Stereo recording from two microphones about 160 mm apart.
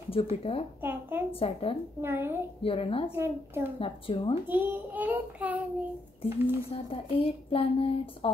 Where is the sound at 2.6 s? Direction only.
35° left (ahead or behind).